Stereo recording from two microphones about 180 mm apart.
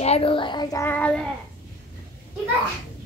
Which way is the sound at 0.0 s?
35° left (ahead or behind).